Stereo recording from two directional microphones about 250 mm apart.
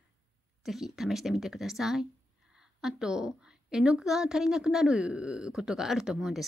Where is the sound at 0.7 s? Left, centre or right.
Centre.